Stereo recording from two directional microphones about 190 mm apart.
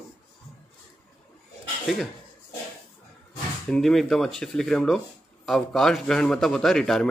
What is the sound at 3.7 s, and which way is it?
A man's voice, centre (ahead or behind).